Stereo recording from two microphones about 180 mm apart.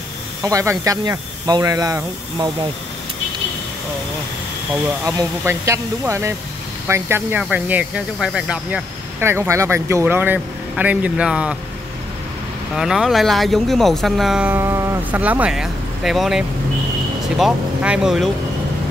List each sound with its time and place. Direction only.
0.4 s speech: 15° right (ahead or behind)
4.8 s speech: 15° right (ahead or behind)
12.7 s speech: centre (ahead or behind)